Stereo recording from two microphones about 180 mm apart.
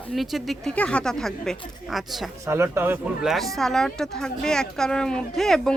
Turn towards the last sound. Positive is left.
turn(degrees=0)  # may be behind; listen again after turning